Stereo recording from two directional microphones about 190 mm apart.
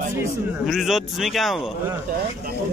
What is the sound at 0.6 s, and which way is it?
Speech, centre (ahead or behind).